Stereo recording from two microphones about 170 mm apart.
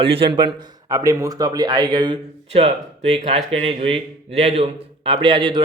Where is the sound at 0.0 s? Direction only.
30° right (ahead or behind).